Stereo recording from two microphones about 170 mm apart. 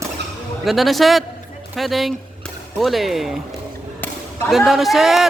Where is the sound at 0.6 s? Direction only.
Centre (ahead or behind).